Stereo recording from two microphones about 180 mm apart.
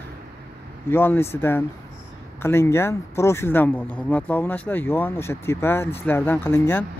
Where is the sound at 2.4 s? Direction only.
15° left (ahead or behind).